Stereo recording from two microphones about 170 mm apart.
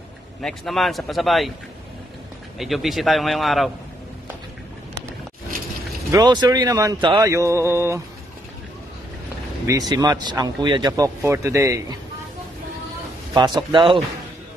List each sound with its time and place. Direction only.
0.4 s a man's voice: centre (ahead or behind)
2.6 s a man's voice: centre (ahead or behind)
6.1 s speech: 25° right (ahead or behind)
7.2 s mantra: 20° right (ahead or behind)
9.7 s speech: 20° right (ahead or behind)
13.3 s speech: 25° right (ahead or behind)